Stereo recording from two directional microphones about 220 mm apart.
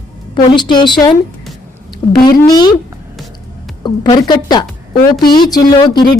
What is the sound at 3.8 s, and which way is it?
A woman's voice, 20° left (ahead or behind).